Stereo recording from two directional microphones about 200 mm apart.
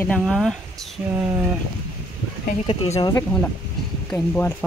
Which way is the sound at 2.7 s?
25° left (ahead or behind).